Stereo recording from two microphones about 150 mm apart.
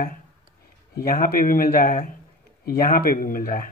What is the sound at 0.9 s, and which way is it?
Speech, 80° left.